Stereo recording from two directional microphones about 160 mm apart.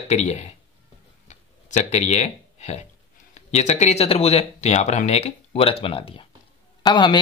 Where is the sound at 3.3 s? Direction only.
45° left (ahead or behind).